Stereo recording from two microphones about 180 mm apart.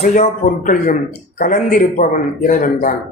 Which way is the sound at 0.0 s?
50° left (ahead or behind).